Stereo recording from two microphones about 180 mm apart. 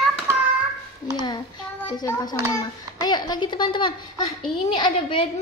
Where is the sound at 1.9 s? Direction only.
20° left (ahead or behind).